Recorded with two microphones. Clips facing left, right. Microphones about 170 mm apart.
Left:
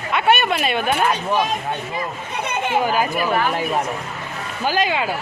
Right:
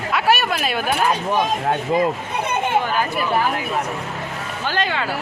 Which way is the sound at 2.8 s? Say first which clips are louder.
Left 2 dB; 10° left (ahead or behind).